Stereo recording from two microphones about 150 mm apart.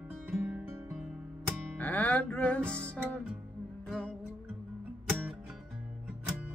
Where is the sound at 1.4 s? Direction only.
10° left (ahead or behind).